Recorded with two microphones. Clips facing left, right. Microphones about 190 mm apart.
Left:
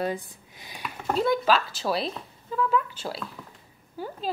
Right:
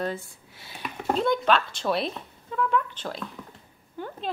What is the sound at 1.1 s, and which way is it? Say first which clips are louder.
A woman's voice: even; 5° left (ahead or behind).